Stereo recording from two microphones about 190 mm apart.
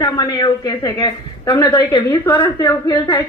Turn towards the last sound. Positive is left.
turn(degrees=15)  # may be behind; listen again after turning